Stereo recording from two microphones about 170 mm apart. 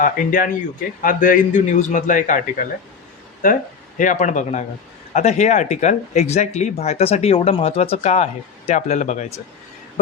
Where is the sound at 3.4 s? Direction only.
50° left (ahead or behind).